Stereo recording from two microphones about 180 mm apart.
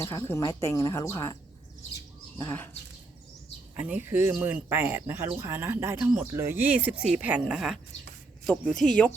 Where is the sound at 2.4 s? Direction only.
15° left (ahead or behind).